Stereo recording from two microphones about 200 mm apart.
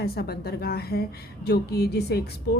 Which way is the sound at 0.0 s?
50° left (ahead or behind).